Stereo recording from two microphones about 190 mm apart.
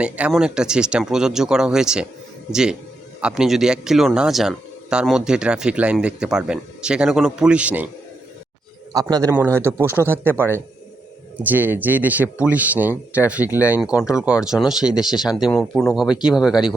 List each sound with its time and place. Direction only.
0.0 s speech: 5° right (ahead or behind)
8.9 s a man's voice: 20° right (ahead or behind)
9.8 s speech: 15° left (ahead or behind)
10.1 s speech: 10° right (ahead or behind)